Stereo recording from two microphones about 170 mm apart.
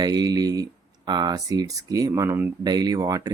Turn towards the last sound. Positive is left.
turn(degrees=-20)  # may be behind; listen again after turning